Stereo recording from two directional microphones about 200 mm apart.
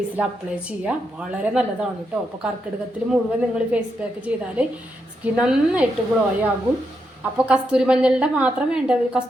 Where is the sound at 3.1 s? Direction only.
5° right (ahead or behind).